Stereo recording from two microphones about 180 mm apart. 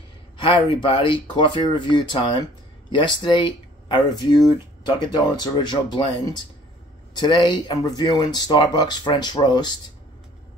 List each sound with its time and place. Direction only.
0.4 s speech: 30° left (ahead or behind)